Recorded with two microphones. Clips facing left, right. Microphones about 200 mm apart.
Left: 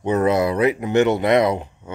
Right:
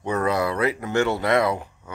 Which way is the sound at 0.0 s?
20° left (ahead or behind).